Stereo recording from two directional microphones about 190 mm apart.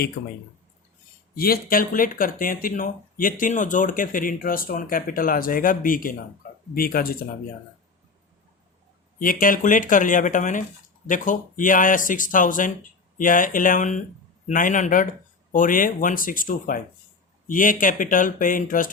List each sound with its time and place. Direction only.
0.2 s speech: 55° left (ahead or behind)
1.4 s speech: 50° left (ahead or behind)
9.1 s speech: 50° left (ahead or behind)